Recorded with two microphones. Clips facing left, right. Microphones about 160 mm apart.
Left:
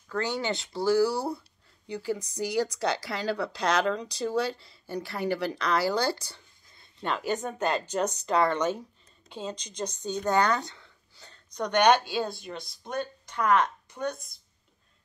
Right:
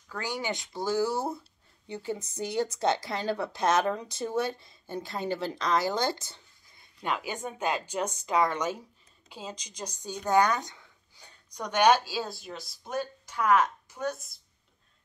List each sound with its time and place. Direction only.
0.1 s a woman's voice: 10° right (ahead or behind)
7.0 s speech: 10° right (ahead or behind)